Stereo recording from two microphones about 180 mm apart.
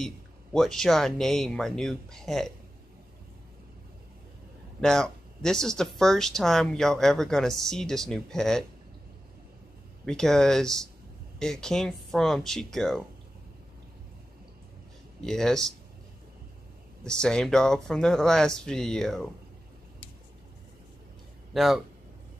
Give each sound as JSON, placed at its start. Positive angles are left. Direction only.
{"t": 0.0, "sound": "speech", "side_deg": 5}
{"t": 4.7, "sound": "speech", "side_deg": 5}
{"t": 10.0, "sound": "speech", "side_deg": 5}
{"t": 15.1, "sound": "speech", "side_deg": 5}
{"t": 17.0, "sound": "speech", "side_deg": 5}
{"t": 21.5, "sound": "speech", "side_deg": 0}